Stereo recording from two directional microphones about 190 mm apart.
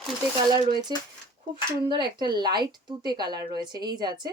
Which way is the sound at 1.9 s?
25° right (ahead or behind).